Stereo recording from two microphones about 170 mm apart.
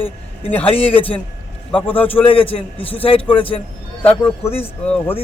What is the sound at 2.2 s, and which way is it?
Speech, 30° left (ahead or behind).